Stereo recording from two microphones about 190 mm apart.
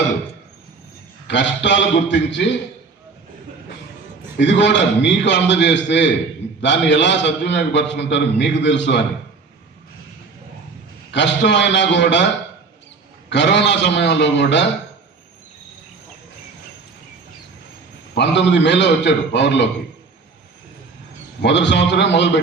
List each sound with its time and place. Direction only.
1.3 s a man's voice: 70° left (ahead or behind)
4.4 s a man's voice: 70° left (ahead or behind)
11.1 s a man's voice: 65° left (ahead or behind)
13.3 s a man's voice: 65° left (ahead or behind)
18.1 s a man's voice: 65° left (ahead or behind)
21.4 s a man's voice: 70° left (ahead or behind)